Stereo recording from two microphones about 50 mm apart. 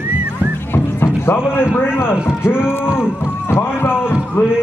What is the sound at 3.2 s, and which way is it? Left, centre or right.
Rowboat, left.